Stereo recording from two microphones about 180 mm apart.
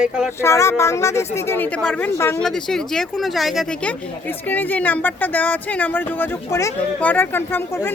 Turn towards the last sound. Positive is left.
turn(degrees=10)  # may be behind; listen again after turning